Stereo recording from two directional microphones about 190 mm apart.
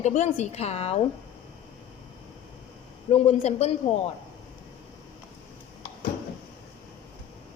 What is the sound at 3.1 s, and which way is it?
Speech, 30° left (ahead or behind).